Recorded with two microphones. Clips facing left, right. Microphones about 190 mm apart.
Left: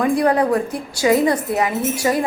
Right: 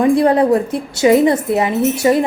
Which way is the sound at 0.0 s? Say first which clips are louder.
Right 4 dB; 25° right (ahead or behind).